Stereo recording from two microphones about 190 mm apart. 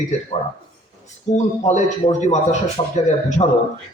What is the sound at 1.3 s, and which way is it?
A man's voice, 35° left (ahead or behind).